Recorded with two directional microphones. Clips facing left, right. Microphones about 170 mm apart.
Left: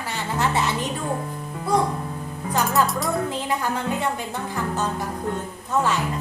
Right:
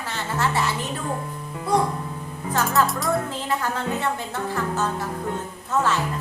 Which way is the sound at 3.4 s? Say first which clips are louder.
Left 1 dB; 15° left (ahead or behind).